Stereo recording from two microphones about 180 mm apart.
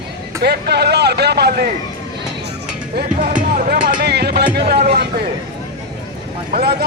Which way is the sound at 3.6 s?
55° right (ahead or behind).